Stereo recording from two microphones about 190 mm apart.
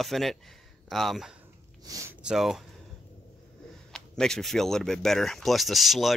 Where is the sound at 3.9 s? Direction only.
5° left (ahead or behind).